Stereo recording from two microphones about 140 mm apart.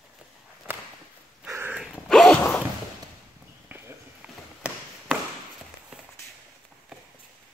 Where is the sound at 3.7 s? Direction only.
15° right (ahead or behind).